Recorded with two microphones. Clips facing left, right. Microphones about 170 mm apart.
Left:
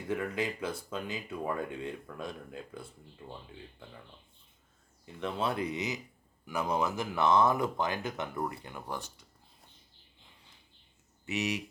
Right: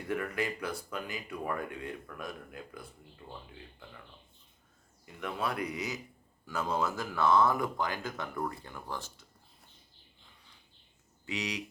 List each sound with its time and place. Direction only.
0.1 s speech: 20° left (ahead or behind)
5.0 s speech: 25° left (ahead or behind)
11.3 s speech: 25° left (ahead or behind)